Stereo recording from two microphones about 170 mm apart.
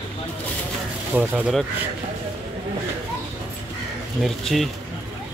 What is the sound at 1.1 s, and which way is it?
Speech, 10° right (ahead or behind).